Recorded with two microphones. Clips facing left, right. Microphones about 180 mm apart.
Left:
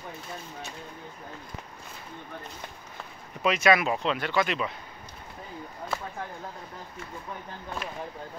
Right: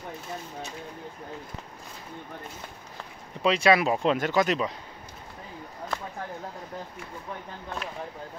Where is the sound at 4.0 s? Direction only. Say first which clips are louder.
Right 3 dB; 45° right (ahead or behind).